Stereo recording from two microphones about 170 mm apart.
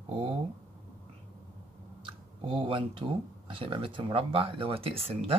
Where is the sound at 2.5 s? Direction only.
30° right (ahead or behind).